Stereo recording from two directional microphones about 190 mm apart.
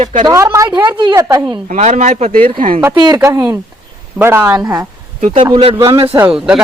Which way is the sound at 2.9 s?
20° right (ahead or behind).